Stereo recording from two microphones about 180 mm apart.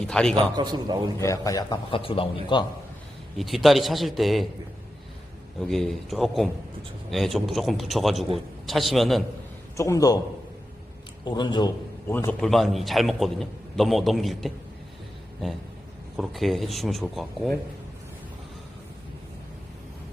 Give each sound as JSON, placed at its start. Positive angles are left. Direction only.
{"t": 0.0, "sound": "a man's voice", "side_deg": 5}
{"t": 0.5, "sound": "a man's voice", "side_deg": -25}
{"t": 1.2, "sound": "a man's voice", "side_deg": 15}
{"t": 3.3, "sound": "a man's voice", "side_deg": 0}
{"t": 5.6, "sound": "a man's voice", "side_deg": 0}
{"t": 9.7, "sound": "a man's voice", "side_deg": 15}
{"t": 11.3, "sound": "a man's voice", "side_deg": 25}
{"t": 12.0, "sound": "a man's voice", "side_deg": 10}
{"t": 16.1, "sound": "a man's voice", "side_deg": 0}